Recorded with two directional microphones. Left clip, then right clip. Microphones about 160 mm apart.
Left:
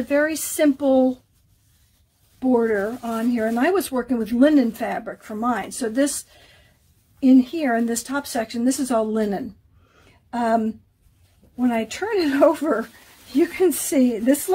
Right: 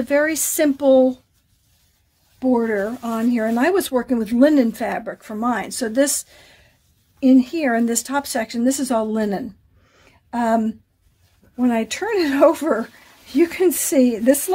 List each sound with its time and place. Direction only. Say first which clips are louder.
0.1 s speech: right 2 dB; 35° right (ahead or behind)
2.5 s speech: left 1 dB; 35° right (ahead or behind)
7.2 s speech: right 1 dB; 35° right (ahead or behind)
11.6 s speech: right 2 dB; 40° right (ahead or behind)